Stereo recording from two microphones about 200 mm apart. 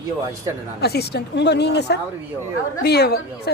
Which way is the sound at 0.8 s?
55° left (ahead or behind).